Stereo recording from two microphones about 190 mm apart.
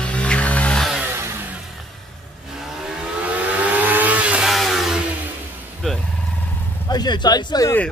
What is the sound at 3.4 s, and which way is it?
Vehicle, 10° right (ahead or behind).